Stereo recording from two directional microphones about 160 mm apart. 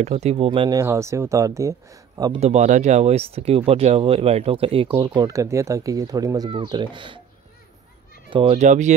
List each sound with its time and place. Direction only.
0.0 s speech: 40° right (ahead or behind)
0.5 s speech: 25° right (ahead or behind)
2.4 s speech: 45° right (ahead or behind); by 7.2 s 30° right (ahead or behind)
8.3 s speech: 30° right (ahead or behind)
8.5 s speech: 50° right (ahead or behind)